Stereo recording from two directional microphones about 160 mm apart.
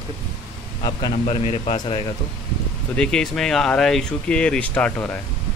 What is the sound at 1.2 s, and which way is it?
Speech, 40° left (ahead or behind).